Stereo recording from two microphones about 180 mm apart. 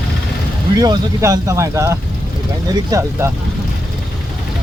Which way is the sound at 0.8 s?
20° right (ahead or behind).